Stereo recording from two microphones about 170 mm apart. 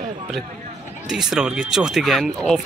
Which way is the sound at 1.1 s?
5° right (ahead or behind).